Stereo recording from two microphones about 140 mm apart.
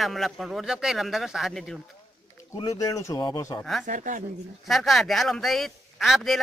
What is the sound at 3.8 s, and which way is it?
Speech, 65° right (ahead or behind).